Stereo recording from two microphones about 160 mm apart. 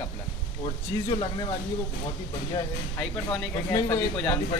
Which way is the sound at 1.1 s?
25° left (ahead or behind).